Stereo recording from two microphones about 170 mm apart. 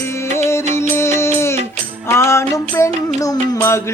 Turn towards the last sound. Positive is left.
turn(degrees=15)  # may be behind; listen again after turning